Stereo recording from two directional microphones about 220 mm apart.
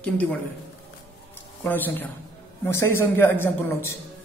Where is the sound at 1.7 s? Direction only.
10° left (ahead or behind).